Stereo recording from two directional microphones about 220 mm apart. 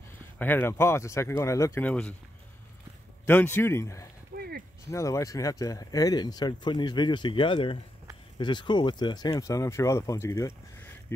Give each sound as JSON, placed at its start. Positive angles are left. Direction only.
{"t": 0.4, "sound": "speech", "side_deg": 10}
{"t": 3.3, "sound": "speech", "side_deg": 10}
{"t": 4.4, "sound": "a sound", "side_deg": -45}
{"t": 4.9, "sound": "speech", "side_deg": 15}